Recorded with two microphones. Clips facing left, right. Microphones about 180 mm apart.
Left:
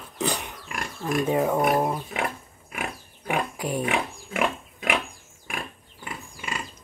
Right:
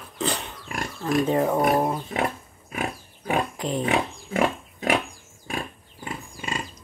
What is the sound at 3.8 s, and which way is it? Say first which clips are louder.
Pig: right 3 dB; 35° right (ahead or behind).